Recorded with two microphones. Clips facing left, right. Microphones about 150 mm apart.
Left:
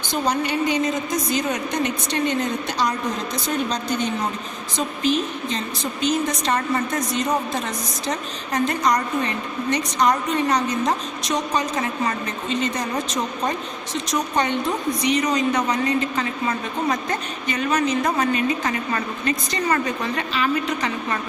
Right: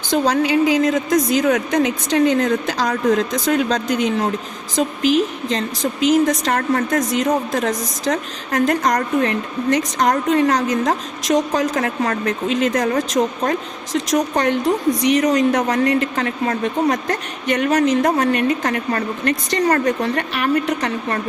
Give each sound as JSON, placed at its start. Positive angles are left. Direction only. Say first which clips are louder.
{"t": 0.3, "sound": "a woman's voice", "louder": "right 5 dB", "side_deg": -90}
{"t": 19.3, "sound": "a woman's voice", "louder": "right 5 dB", "side_deg": -75}
{"t": 19.8, "sound": "speech", "louder": "right 6 dB", "side_deg": -65}